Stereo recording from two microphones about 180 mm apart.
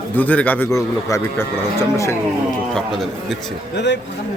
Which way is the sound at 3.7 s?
75° left (ahead or behind).